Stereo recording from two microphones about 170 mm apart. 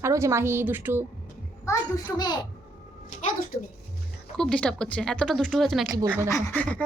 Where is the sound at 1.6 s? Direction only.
20° left (ahead or behind).